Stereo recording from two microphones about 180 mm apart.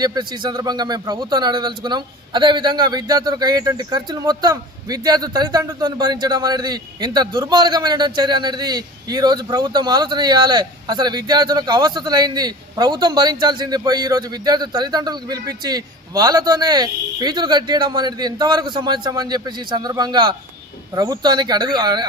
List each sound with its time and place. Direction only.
0.0 s a man's voice: 25° right (ahead or behind)